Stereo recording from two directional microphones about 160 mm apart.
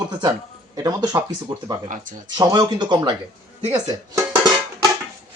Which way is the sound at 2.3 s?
25° right (ahead or behind).